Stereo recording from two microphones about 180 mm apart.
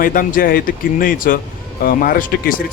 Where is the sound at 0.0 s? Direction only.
50° left (ahead or behind).